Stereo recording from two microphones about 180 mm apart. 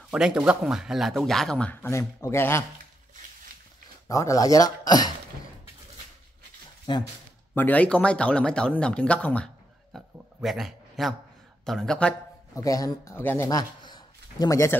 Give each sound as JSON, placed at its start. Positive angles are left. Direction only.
{"t": 0.1, "sound": "speech", "side_deg": -5}
{"t": 4.1, "sound": "speech", "side_deg": 20}
{"t": 6.9, "sound": "speech", "side_deg": 25}
{"t": 7.5, "sound": "speech", "side_deg": 10}
{"t": 9.9, "sound": "a sound", "side_deg": 0}
{"t": 11.6, "sound": "speech", "side_deg": 0}
{"t": 12.5, "sound": "a man's voice", "side_deg": 20}